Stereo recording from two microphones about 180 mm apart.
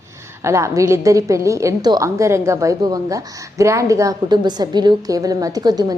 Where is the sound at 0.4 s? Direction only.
15° right (ahead or behind).